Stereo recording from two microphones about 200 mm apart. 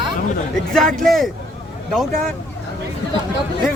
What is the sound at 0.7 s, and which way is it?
Speech, centre (ahead or behind).